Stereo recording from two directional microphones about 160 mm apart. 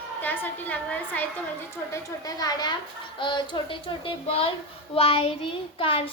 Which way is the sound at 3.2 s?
30° left (ahead or behind).